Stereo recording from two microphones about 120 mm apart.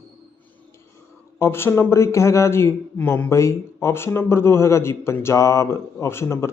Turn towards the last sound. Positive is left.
turn(degrees=20)  # may be behind; listen again after turning